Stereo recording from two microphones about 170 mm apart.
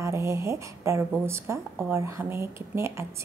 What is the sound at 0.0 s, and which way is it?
Speech, 15° right (ahead or behind).